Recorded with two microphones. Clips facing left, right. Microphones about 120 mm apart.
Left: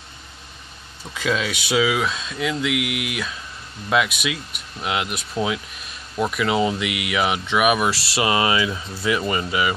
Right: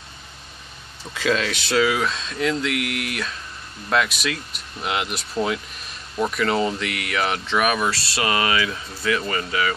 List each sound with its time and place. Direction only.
1.1 s speech: 5° left (ahead or behind)
7.9 s speech: 25° left (ahead or behind)